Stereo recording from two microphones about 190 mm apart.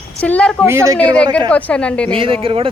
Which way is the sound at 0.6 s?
15° right (ahead or behind).